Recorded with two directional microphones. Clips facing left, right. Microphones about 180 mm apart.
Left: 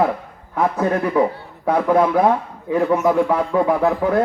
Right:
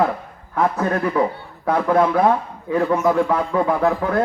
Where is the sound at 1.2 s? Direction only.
15° left (ahead or behind).